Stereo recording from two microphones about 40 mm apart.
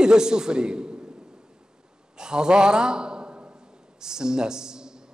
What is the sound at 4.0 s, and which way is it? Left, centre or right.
Speech, centre.